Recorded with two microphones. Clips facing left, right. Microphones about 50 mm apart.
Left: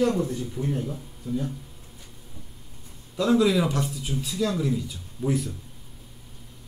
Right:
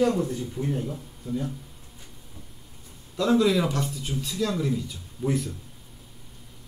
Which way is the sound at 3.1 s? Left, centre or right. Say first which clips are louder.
Left 1 dB; centre.